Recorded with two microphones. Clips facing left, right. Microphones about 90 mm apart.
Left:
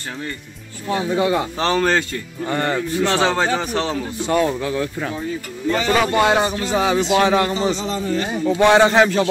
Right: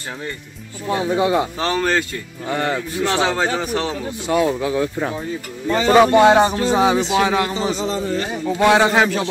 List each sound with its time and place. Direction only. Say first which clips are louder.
0.8 s speech: right 1 dB; 20° right (ahead or behind)
1.6 s speech: left 1 dB; 5° right (ahead or behind)
5.8 s speech: right 6 dB; 30° right (ahead or behind)
7.2 s a man's voice: left 1 dB; 5° right (ahead or behind)